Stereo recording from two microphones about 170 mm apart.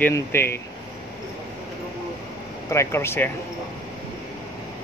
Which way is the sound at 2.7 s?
15° left (ahead or behind).